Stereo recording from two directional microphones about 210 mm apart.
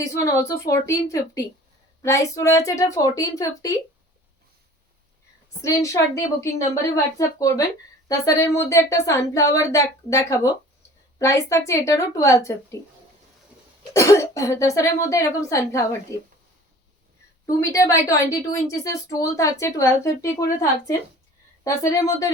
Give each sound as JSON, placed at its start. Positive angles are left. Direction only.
{"t": 0.0, "sound": "a woman's voice", "side_deg": 15}
{"t": 5.6, "sound": "a woman's voice", "side_deg": 15}
{"t": 13.9, "sound": "a woman's voice", "side_deg": 15}
{"t": 17.7, "sound": "a woman's voice", "side_deg": 15}